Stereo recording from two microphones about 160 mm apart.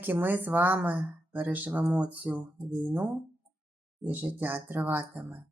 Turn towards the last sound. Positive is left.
turn(degrees=-10)  # may be behind; listen again after turning